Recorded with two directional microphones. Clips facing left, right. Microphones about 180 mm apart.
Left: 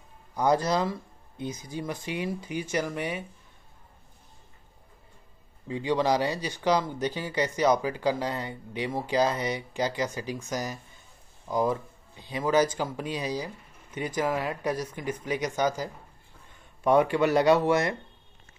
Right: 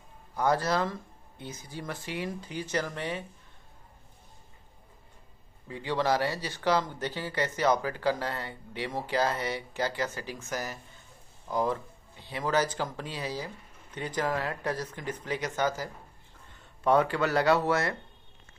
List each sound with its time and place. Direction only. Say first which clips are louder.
0.4 s speech: left 2 dB; 15° left (ahead or behind)
5.7 s speech: left 3 dB; 15° left (ahead or behind)